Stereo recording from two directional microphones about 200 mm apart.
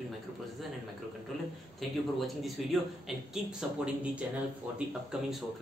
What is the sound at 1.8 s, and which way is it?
A man's voice, centre (ahead or behind).